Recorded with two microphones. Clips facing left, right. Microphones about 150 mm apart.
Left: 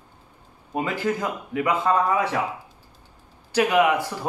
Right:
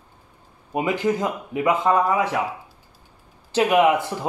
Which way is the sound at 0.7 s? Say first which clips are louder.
Right 3 dB; 20° right (ahead or behind).